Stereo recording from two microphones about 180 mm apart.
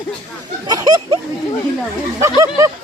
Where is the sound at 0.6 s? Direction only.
20° right (ahead or behind).